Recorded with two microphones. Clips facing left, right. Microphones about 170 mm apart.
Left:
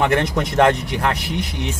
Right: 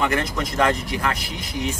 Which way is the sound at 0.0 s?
70° left (ahead or behind).